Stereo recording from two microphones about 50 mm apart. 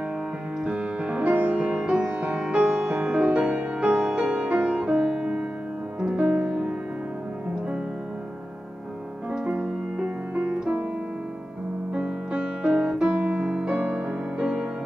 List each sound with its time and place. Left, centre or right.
0.7 s music: right
2.8 s music: right
9.3 s music: centre
11.9 s music: right